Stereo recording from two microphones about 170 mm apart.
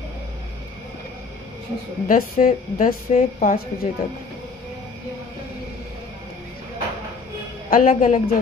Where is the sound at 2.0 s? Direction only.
55° left (ahead or behind).